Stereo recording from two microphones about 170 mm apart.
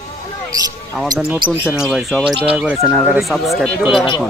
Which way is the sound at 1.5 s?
Centre (ahead or behind).